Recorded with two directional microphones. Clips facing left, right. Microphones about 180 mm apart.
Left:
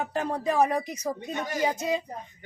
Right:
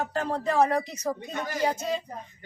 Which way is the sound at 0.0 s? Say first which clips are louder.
Even; 15° left (ahead or behind).